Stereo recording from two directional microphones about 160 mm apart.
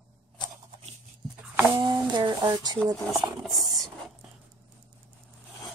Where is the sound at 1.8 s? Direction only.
30° right (ahead or behind).